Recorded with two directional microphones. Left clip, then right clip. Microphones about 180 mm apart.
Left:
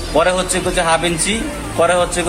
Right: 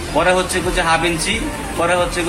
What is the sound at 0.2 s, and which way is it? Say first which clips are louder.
A man's voice: even; 60° left (ahead or behind).